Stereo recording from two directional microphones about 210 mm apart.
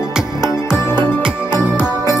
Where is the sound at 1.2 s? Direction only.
5° right (ahead or behind).